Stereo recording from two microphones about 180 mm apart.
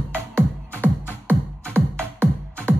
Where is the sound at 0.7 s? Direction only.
10° left (ahead or behind).